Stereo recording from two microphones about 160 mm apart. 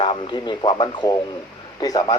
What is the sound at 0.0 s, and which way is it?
Speech, 30° left (ahead or behind).